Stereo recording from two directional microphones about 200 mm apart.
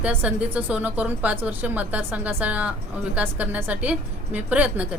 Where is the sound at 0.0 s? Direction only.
5° right (ahead or behind).